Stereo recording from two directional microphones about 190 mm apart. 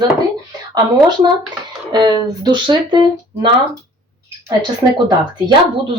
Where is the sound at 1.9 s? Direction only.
20° right (ahead or behind).